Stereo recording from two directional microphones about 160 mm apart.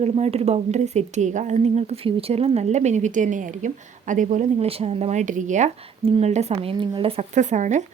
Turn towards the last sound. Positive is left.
turn(degrees=-50)  # may be behind; listen again after turning